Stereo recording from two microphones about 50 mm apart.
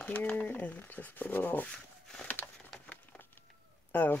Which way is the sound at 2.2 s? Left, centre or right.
Left.